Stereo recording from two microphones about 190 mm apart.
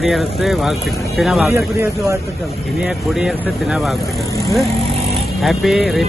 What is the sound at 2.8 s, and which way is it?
Speech, centre (ahead or behind).